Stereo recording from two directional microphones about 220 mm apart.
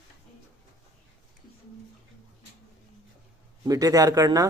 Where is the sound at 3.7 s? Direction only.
15° right (ahead or behind).